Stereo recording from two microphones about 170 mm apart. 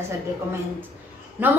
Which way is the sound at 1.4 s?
10° right (ahead or behind).